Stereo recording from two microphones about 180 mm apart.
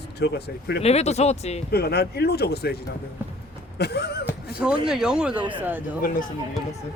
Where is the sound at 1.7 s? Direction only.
60° left (ahead or behind).